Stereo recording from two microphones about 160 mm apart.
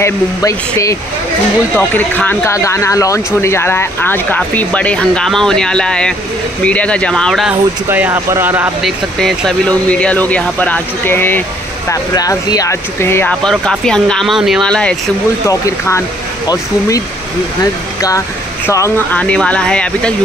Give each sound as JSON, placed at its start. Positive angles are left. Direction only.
{"t": 0.0, "sound": "speech", "side_deg": 20}
{"t": 7.9, "sound": "speech", "side_deg": -10}
{"t": 8.8, "sound": "speech", "side_deg": 0}
{"t": 15.4, "sound": "speech", "side_deg": 20}
{"t": 18.7, "sound": "speech", "side_deg": 15}